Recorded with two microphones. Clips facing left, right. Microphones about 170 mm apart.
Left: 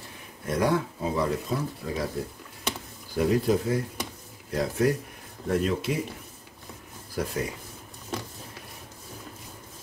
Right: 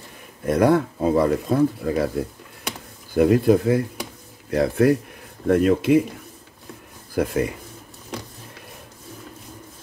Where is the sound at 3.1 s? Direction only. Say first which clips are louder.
Right 7 dB; 60° right (ahead or behind).